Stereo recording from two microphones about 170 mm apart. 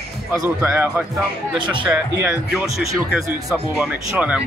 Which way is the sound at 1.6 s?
30° right (ahead or behind).